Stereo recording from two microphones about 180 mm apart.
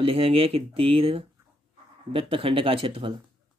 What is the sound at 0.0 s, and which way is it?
Speech, 30° right (ahead or behind).